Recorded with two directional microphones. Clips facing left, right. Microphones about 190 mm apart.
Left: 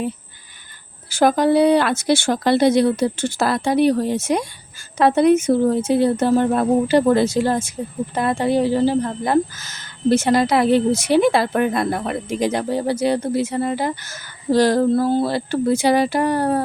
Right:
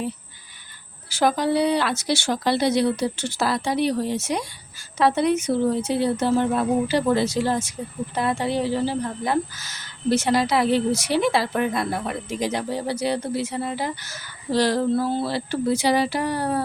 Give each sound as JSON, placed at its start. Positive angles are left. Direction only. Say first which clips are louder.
{"t": 1.1, "sound": "speech", "louder": "left 5 dB", "side_deg": 50}